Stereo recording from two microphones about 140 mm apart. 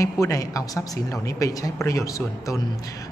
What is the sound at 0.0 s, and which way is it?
A woman's voice, 25° left (ahead or behind).